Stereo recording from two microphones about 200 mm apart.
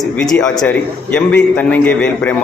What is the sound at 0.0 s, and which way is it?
A man's voice, 5° left (ahead or behind).